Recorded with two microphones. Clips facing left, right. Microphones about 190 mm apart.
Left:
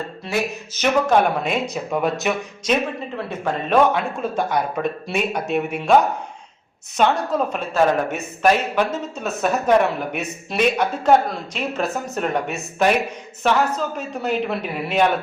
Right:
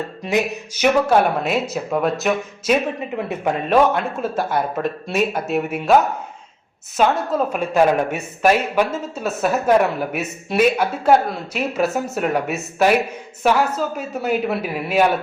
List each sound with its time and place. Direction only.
0.2 s speech: 20° right (ahead or behind); by 2.7 s centre (ahead or behind)
3.2 s speech: 15° right (ahead or behind)